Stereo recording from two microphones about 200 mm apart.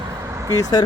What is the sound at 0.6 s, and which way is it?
Speech, 20° left (ahead or behind).